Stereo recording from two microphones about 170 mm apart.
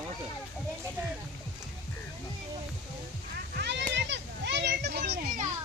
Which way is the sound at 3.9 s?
90° right.